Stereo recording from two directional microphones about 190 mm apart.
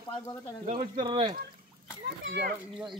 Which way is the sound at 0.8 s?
25° right (ahead or behind).